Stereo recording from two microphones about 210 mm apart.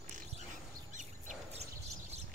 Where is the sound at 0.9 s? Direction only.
35° right (ahead or behind).